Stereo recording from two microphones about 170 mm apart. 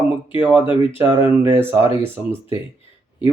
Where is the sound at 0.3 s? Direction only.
10° right (ahead or behind).